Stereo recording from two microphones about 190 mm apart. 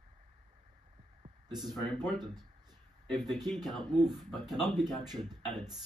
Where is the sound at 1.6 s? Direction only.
Centre (ahead or behind).